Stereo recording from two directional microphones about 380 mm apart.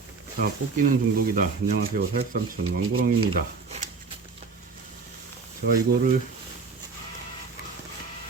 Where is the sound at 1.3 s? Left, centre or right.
Right.